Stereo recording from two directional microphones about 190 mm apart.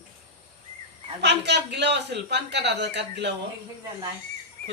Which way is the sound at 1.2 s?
65° right (ahead or behind).